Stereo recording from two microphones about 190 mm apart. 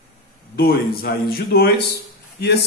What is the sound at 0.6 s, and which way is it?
A man's voice, 50° left (ahead or behind).